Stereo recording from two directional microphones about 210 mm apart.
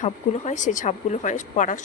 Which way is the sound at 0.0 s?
35° left (ahead or behind).